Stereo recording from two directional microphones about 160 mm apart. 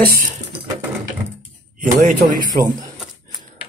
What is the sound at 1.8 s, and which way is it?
Speech, 55° right (ahead or behind).